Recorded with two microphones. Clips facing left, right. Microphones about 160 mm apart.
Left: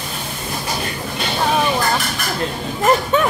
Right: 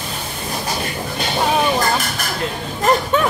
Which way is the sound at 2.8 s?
Centre (ahead or behind).